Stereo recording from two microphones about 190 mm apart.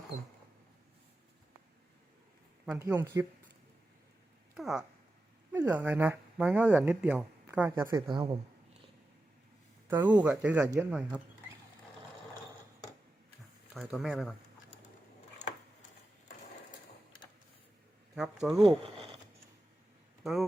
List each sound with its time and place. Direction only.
2.7 s speech: 15° right (ahead or behind)
4.5 s a sound: centre (ahead or behind)
5.5 s speech: 10° right (ahead or behind)
8.0 s a man's voice: 25° right (ahead or behind)
9.9 s speech: 10° right (ahead or behind)
13.7 s speech: centre (ahead or behind)
18.1 s speech: centre (ahead or behind)